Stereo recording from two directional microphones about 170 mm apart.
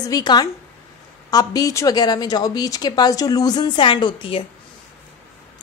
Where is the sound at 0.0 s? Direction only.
25° left (ahead or behind).